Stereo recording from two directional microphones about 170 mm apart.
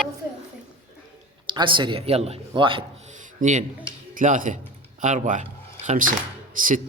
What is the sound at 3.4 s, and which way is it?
Speech, 45° right (ahead or behind).